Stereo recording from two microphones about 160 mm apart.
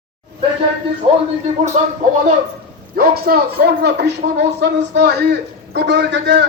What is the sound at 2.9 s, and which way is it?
A man's voice, 70° right (ahead or behind).